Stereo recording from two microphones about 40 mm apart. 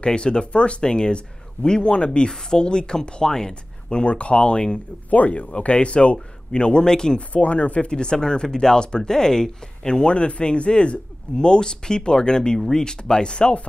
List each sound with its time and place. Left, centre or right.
0.0 s speech: left
4.0 s speech: left
5.1 s speech: left
5.5 s speech: left
7.2 s speech: left